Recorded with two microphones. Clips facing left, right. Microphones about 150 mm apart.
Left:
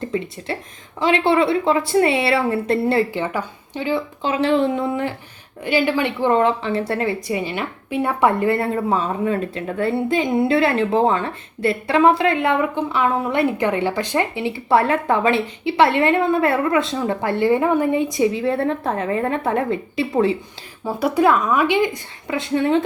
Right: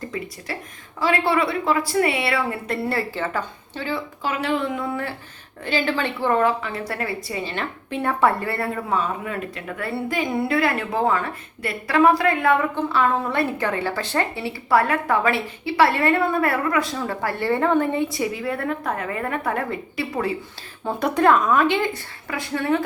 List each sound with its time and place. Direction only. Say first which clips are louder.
0.1 s a woman's voice: left 7 dB; 25° left (ahead or behind)
20.8 s a woman's voice: left 1 dB; 5° left (ahead or behind); by 22.8 s 20° left (ahead or behind)